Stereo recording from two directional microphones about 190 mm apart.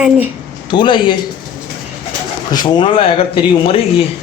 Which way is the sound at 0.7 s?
25° left (ahead or behind).